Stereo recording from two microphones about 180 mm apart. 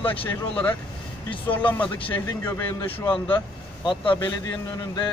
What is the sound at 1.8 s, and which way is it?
Speech, 25° left (ahead or behind).